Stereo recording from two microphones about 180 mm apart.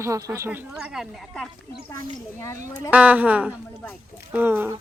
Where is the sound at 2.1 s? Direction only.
15° left (ahead or behind).